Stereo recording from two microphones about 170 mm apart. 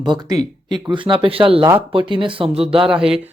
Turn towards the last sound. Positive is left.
turn(degrees=-5)  # may be behind; listen again after turning